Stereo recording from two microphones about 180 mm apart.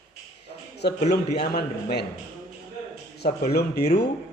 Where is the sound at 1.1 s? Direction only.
65° left (ahead or behind).